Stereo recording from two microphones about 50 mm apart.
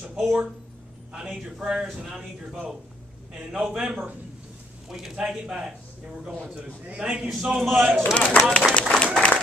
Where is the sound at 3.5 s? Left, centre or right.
Centre.